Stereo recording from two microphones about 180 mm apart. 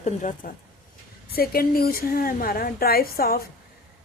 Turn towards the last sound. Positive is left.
turn(degrees=55)  # may be behind; listen again after turning